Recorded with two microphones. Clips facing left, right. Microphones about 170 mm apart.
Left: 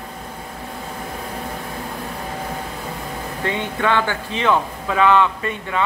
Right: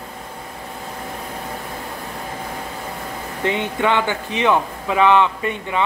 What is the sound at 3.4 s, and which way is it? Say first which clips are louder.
A man's voice: right 2 dB; 20° right (ahead or behind).